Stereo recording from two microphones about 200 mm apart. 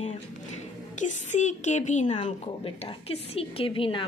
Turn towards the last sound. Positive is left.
turn(degrees=25)  # may be behind; listen again after turning